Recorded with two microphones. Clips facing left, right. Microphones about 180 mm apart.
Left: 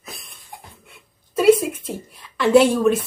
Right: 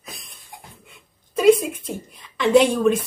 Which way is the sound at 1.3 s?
5° left (ahead or behind).